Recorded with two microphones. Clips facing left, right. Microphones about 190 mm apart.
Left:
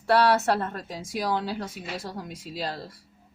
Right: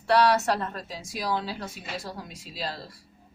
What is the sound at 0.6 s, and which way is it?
Speech, 55° left (ahead or behind).